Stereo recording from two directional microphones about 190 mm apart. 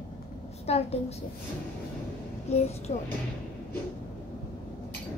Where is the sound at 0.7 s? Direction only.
35° left (ahead or behind).